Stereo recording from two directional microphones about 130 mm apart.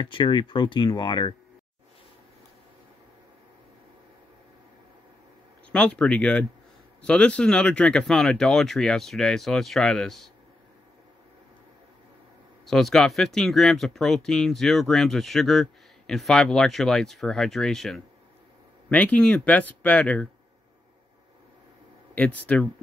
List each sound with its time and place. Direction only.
0.1 s speech: 35° left (ahead or behind)
5.7 s speech: 10° left (ahead or behind)
12.6 s speech: centre (ahead or behind)
22.1 s speech: 10° left (ahead or behind)